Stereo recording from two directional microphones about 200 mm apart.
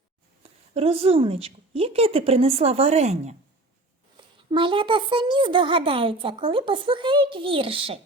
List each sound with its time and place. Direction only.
0.7 s speech: 30° right (ahead or behind)
4.5 s speech: 25° right (ahead or behind)